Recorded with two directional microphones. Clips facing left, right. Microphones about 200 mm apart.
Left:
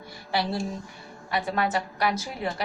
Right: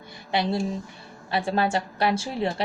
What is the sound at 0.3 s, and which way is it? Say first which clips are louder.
A woman's voice: right 3 dB; 20° right (ahead or behind).